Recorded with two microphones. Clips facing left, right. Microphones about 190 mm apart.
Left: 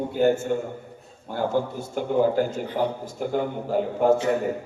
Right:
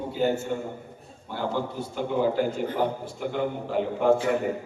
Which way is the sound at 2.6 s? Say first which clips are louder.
Even; 50° right (ahead or behind).